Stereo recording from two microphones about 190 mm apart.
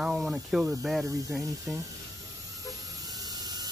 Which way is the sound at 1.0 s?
20° right (ahead or behind).